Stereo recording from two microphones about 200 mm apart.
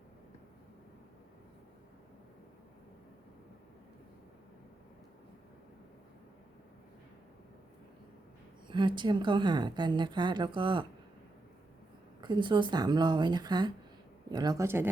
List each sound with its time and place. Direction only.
8.6 s a woman's voice: 25° right (ahead or behind)
12.2 s a woman's voice: 25° right (ahead or behind)